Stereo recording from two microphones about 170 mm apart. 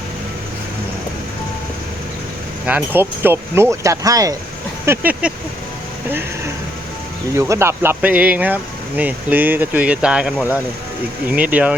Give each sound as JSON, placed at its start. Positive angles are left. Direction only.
{"t": 2.6, "sound": "speech", "side_deg": -10}
{"t": 4.9, "sound": "speech", "side_deg": -10}
{"t": 7.3, "sound": "speech", "side_deg": -15}
{"t": 11.3, "sound": "speech", "side_deg": -10}